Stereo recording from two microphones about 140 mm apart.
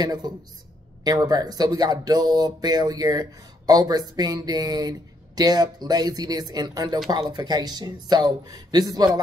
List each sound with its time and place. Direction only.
0.0 s speech: 30° right (ahead or behind)